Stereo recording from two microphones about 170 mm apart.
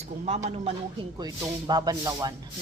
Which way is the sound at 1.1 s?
20° right (ahead or behind).